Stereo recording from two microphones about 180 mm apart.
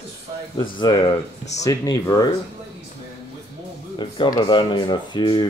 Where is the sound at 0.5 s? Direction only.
25° left (ahead or behind).